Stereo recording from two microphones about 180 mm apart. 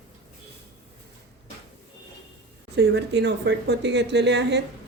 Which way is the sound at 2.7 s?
70° right (ahead or behind).